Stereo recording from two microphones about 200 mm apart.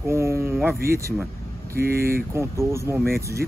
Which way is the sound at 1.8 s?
50° right (ahead or behind).